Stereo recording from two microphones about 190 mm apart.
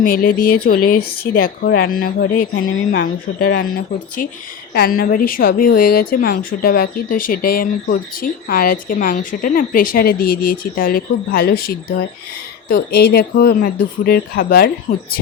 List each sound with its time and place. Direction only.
0.0 s a woman's voice: 50° left (ahead or behind)